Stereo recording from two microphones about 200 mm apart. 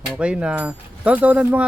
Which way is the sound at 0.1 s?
5° right (ahead or behind).